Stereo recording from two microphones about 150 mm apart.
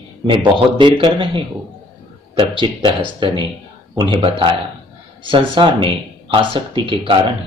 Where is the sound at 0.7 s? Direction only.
30° right (ahead or behind).